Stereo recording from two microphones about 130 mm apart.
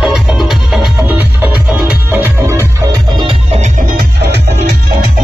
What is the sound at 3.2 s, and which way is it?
Music, 45° right (ahead or behind).